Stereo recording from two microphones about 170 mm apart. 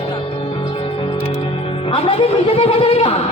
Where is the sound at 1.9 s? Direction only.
30° left (ahead or behind).